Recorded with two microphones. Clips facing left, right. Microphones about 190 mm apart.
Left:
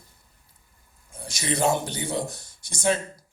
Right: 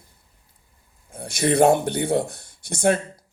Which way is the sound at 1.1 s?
60° right (ahead or behind).